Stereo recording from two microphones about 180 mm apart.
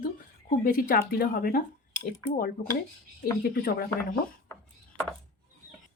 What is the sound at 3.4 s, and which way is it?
Speech, 60° left (ahead or behind).